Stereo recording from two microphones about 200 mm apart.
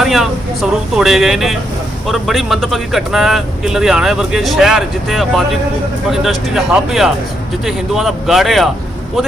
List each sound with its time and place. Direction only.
0.0 s speech: centre (ahead or behind)